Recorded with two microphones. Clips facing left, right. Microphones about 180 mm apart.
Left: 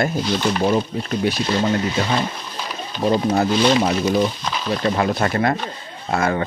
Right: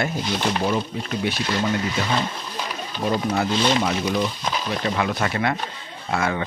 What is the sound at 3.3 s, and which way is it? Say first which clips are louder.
Speech: left 4 dB; 40° left (ahead or behind).